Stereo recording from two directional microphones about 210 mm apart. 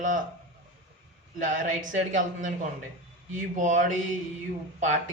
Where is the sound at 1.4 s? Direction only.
40° right (ahead or behind).